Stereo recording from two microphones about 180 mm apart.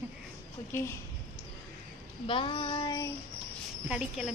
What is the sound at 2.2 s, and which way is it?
Child singing, 30° left (ahead or behind).